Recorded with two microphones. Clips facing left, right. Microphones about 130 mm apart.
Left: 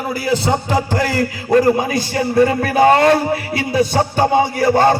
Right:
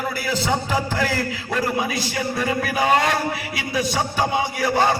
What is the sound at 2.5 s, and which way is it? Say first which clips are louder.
A man's voice: left 7 dB; 55° left (ahead or behind).